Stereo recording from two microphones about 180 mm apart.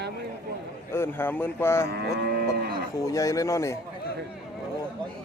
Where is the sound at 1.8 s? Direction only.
65° right (ahead or behind).